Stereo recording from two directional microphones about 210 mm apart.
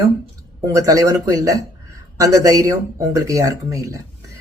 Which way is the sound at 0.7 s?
15° right (ahead or behind).